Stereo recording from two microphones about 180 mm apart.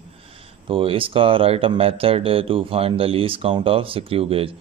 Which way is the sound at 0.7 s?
30° right (ahead or behind).